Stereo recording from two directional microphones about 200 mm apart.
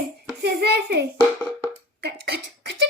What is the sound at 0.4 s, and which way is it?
A child's voice, 50° right (ahead or behind).